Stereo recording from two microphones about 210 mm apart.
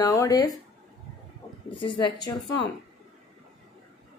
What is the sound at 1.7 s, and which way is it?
A woman's voice, 25° left (ahead or behind).